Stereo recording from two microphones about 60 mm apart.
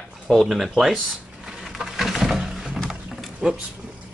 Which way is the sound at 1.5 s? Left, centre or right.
Centre.